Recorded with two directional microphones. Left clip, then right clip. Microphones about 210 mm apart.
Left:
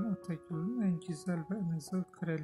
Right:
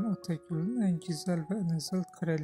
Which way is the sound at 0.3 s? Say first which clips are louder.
Right 4 dB; 25° right (ahead or behind).